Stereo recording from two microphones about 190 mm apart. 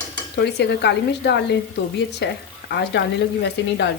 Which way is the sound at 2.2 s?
65° left (ahead or behind).